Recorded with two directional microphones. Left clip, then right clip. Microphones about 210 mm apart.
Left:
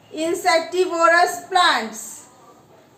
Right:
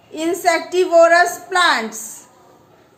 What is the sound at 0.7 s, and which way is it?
A woman's voice, 40° right (ahead or behind).